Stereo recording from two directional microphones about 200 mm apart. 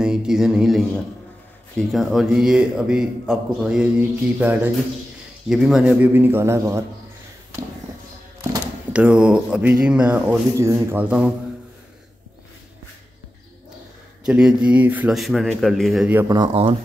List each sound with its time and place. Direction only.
0.0 s a sound: 5° right (ahead or behind)
1.8 s speech: centre (ahead or behind)
8.9 s speech: 5° right (ahead or behind)
14.2 s speech: 5° right (ahead or behind)
16.3 s speech: 25° right (ahead or behind)